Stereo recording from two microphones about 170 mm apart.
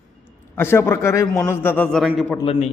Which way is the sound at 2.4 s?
35° left (ahead or behind).